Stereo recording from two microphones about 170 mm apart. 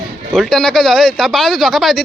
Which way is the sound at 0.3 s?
5° left (ahead or behind).